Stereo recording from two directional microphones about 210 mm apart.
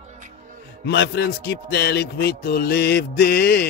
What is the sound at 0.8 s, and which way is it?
A man's voice, 55° left (ahead or behind).